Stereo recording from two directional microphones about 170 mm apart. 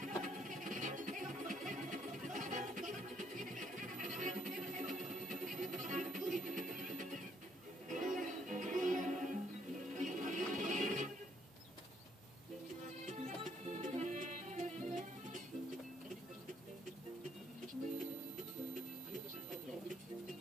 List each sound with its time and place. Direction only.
0.0 s music: 50° right (ahead or behind)
13.0 s music: 40° right (ahead or behind)